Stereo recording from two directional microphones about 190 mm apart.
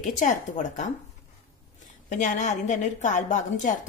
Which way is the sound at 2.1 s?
40° left (ahead or behind).